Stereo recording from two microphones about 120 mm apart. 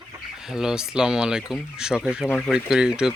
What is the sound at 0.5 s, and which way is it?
Speech, 5° right (ahead or behind).